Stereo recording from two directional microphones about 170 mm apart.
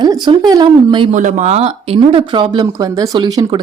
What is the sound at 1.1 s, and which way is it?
Speech, 45° right (ahead or behind).